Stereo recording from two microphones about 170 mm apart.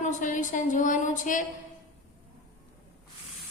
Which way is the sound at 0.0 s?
50° left (ahead or behind).